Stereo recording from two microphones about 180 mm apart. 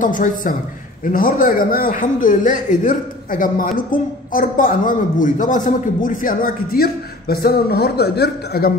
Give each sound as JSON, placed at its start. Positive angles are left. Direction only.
{"t": 0.0, "sound": "a man's voice", "side_deg": 45}